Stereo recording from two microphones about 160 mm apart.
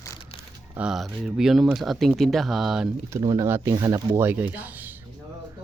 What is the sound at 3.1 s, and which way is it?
Speech, 25° right (ahead or behind).